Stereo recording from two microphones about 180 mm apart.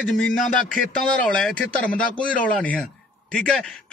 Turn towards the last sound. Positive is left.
turn(degrees=5)  # may be behind; listen again after turning